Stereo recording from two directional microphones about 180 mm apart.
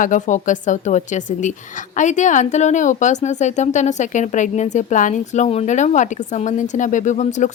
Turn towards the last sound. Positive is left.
turn(degrees=40)  # may be behind; listen again after turning